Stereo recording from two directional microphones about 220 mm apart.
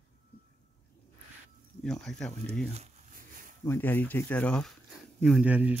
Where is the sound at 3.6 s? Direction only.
10° left (ahead or behind).